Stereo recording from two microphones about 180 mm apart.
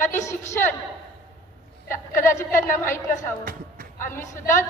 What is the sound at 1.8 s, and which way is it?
A woman's voice, 15° left (ahead or behind).